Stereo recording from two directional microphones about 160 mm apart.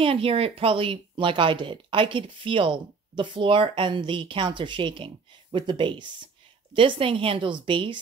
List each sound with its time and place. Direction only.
0.0 s speech: 35° right (ahead or behind)